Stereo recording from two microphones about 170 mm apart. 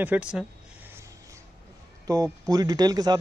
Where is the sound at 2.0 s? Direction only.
20° right (ahead or behind).